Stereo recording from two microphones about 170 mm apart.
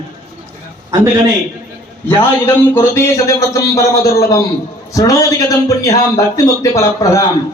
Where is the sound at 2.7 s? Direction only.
15° left (ahead or behind).